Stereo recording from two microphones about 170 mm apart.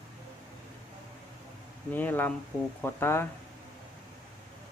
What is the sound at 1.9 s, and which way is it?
Speech, 10° left (ahead or behind).